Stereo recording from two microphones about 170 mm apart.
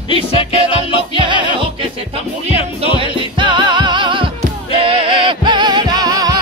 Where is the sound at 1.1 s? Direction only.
30° right (ahead or behind).